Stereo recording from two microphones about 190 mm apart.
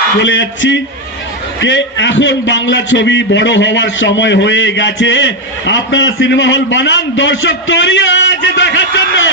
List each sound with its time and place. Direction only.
0.2 s a man's voice: 70° left (ahead or behind)